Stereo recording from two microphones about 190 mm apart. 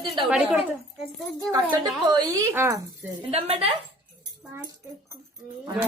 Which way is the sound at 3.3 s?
30° right (ahead or behind).